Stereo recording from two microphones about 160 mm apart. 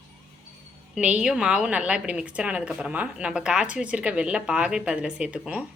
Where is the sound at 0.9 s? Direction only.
5° right (ahead or behind).